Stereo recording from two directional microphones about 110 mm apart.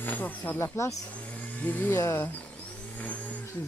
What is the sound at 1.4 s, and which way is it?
Speech, 10° left (ahead or behind).